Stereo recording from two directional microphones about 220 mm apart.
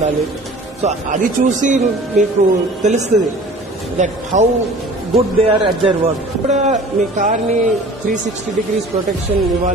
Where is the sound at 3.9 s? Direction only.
35° right (ahead or behind).